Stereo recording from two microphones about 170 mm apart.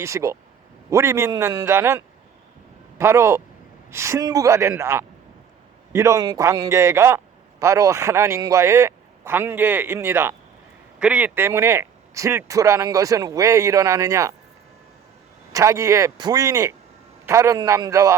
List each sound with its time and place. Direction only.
0.0 s a man's voice: 15° right (ahead or behind)
15.5 s speech: 20° right (ahead or behind)